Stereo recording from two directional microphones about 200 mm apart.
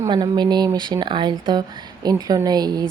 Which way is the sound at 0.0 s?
20° right (ahead or behind).